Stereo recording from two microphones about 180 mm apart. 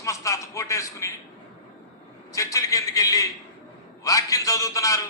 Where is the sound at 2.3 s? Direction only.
20° left (ahead or behind).